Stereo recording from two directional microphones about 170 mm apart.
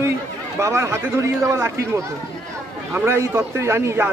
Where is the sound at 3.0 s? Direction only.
15° right (ahead or behind).